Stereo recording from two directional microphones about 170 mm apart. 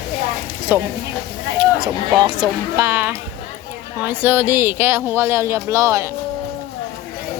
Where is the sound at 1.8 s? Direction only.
30° right (ahead or behind).